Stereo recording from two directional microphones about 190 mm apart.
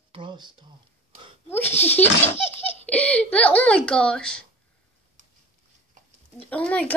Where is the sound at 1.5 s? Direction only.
10° left (ahead or behind).